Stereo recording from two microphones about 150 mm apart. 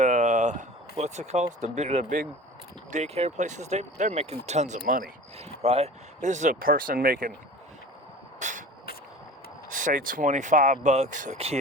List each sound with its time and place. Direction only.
0.0 s a sound: 55° right (ahead or behind)
1.6 s speech: 50° right (ahead or behind)
4.9 s speech: 65° right (ahead or behind)
5.4 s speech: 45° right (ahead or behind); by 7.3 s 75° right (ahead or behind)
8.4 s a sound: 55° right (ahead or behind)
9.6 s speech: 65° right (ahead or behind)
11.3 s speech: 40° right (ahead or behind)